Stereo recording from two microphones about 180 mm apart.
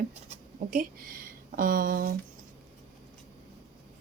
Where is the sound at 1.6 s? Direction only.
50° right (ahead or behind).